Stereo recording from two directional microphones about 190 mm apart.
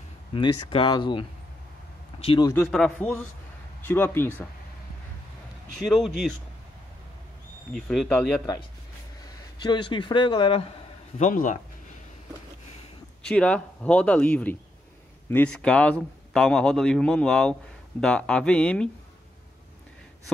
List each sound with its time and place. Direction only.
0.3 s speech: 25° left (ahead or behind)
2.1 s a sound: 30° left (ahead or behind)
2.4 s a man's voice: 10° left (ahead or behind)
5.9 s a man's voice: centre (ahead or behind)
7.7 s a man's voice: centre (ahead or behind)
9.6 s speech: 25° left (ahead or behind)
11.1 s speech: 40° left (ahead or behind)
13.2 s a man's voice: 5° left (ahead or behind)